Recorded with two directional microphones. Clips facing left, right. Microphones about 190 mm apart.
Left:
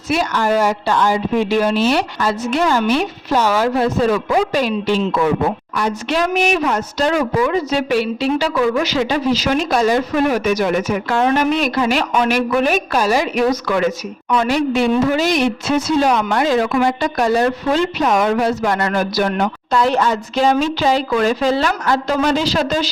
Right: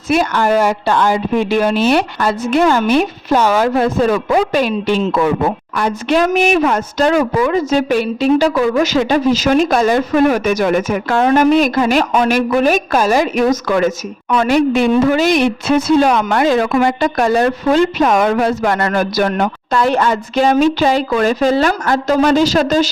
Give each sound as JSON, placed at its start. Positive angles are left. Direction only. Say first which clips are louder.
{"t": 0.1, "sound": "a woman's voice", "louder": "right 3 dB", "side_deg": -55}